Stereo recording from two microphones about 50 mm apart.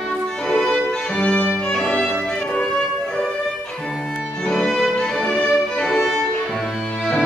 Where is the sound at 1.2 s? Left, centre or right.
Centre.